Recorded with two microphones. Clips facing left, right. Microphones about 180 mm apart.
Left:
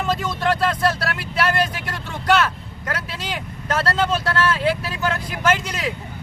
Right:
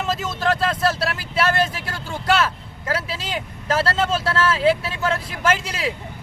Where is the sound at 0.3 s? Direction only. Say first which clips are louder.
Right 1 dB; 25° right (ahead or behind).